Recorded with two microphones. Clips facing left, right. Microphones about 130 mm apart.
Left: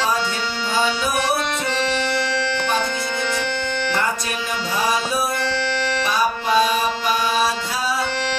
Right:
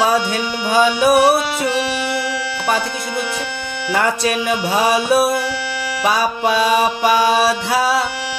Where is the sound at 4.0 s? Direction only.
70° right (ahead or behind).